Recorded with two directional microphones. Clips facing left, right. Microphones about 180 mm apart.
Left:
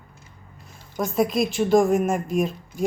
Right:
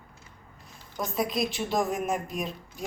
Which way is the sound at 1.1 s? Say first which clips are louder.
Left 7 dB; centre (ahead or behind).